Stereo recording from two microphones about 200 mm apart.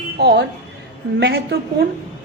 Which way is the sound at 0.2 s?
55° right (ahead or behind).